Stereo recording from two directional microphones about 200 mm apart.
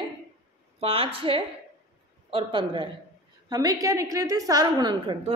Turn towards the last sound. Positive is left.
turn(degrees=-25)  # may be behind; listen again after turning